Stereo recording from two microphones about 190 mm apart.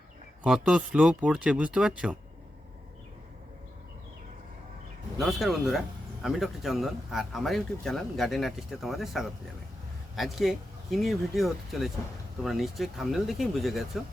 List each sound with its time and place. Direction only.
0.4 s speech: 5° right (ahead or behind)
5.2 s speech: centre (ahead or behind)